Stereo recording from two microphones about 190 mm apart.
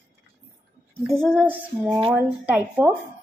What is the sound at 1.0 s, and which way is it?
Child singing, centre (ahead or behind).